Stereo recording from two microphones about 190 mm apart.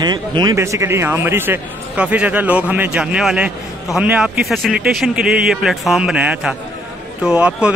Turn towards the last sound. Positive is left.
turn(degrees=-5)  # may be behind; listen again after turning